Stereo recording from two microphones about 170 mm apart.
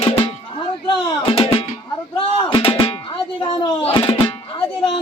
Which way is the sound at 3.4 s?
30° left (ahead or behind).